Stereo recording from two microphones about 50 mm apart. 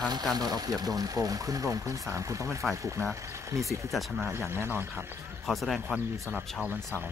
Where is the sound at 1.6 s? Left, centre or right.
Right.